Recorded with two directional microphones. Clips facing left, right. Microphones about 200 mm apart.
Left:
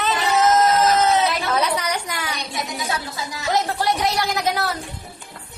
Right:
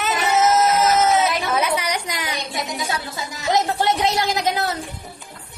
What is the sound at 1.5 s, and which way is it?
A woman's voice, 10° right (ahead or behind).